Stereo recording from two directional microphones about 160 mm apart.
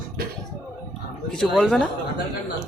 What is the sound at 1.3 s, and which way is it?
Speech, 5° left (ahead or behind).